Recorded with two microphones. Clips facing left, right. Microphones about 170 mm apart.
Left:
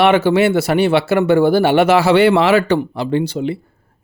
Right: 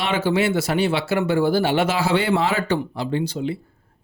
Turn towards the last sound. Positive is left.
turn(degrees=65)  # may be behind; listen again after turning